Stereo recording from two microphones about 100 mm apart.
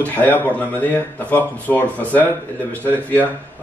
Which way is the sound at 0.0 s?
15° left (ahead or behind).